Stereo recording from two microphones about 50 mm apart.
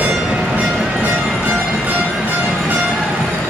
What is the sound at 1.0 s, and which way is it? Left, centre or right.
Music, right.